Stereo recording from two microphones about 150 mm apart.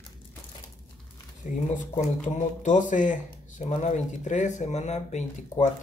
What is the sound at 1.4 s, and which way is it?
Speech, 55° left (ahead or behind).